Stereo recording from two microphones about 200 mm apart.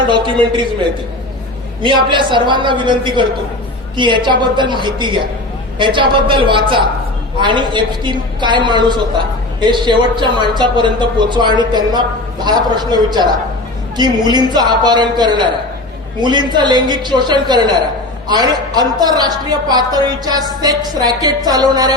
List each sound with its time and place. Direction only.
0.1 s a woman's voice: 25° right (ahead or behind)
1.8 s a woman's voice: 25° right (ahead or behind)